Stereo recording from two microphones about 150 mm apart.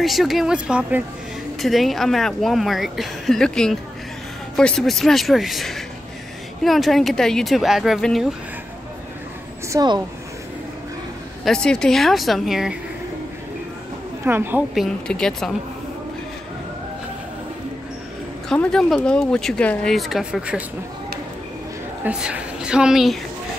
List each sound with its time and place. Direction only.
0.0 s a woman's voice: centre (ahead or behind)
9.7 s speech: 25° right (ahead or behind)
11.4 s a woman's voice: 5° left (ahead or behind)
14.2 s a woman's voice: 15° right (ahead or behind)
14.7 s a woman's voice: centre (ahead or behind)
18.5 s a woman's voice: 5° left (ahead or behind)
22.0 s a woman's voice: 5° right (ahead or behind)